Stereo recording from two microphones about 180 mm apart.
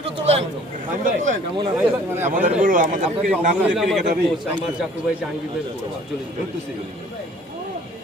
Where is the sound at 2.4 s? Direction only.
45° right (ahead or behind).